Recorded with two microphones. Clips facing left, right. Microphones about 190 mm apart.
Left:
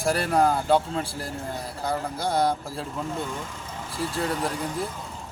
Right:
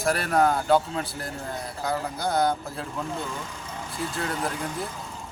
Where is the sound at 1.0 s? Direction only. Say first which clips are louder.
Left 1 dB; 30° left (ahead or behind).